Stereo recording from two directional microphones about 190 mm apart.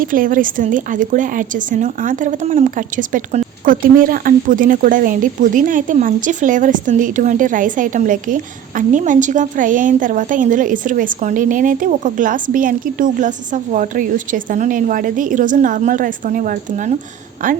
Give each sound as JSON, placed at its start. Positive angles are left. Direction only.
{"t": 0.0, "sound": "speech", "side_deg": -45}